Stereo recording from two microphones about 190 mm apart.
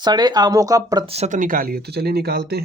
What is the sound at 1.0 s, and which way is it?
Speech, 35° right (ahead or behind).